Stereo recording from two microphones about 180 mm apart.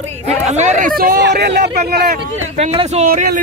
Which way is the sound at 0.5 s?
40° right (ahead or behind).